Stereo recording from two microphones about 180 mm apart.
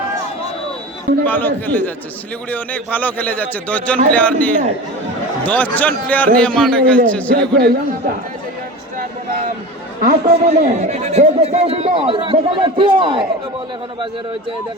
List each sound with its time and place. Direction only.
1.2 s a man's voice: 10° left (ahead or behind)
7.3 s a man's voice: 60° right (ahead or behind)
10.0 s a man's voice: 55° right (ahead or behind)
10.4 s a man's voice: 40° right (ahead or behind)